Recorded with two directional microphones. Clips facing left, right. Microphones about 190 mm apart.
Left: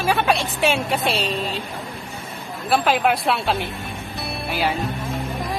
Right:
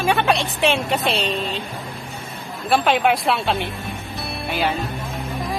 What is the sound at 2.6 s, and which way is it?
Speech, centre (ahead or behind).